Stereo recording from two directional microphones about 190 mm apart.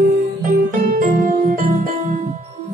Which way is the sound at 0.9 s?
45° right (ahead or behind).